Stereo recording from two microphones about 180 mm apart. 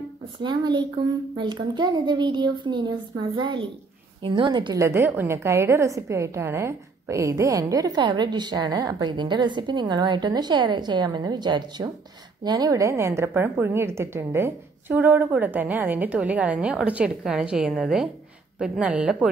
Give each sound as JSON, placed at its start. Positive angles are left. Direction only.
{"t": 0.4, "sound": "a woman's voice", "side_deg": -25}
{"t": 4.8, "sound": "a woman's voice", "side_deg": -15}